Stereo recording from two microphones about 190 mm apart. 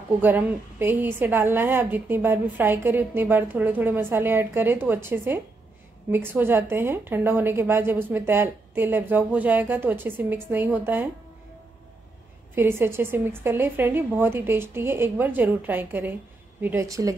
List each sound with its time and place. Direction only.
0.2 s a woman's voice: 10° right (ahead or behind)
12.5 s a woman's voice: 10° right (ahead or behind)